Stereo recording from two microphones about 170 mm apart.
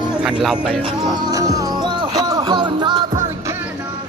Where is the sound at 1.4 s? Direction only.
20° right (ahead or behind).